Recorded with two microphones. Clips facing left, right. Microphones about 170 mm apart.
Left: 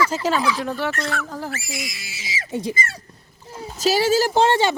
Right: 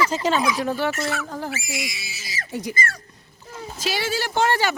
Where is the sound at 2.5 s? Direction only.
25° left (ahead or behind).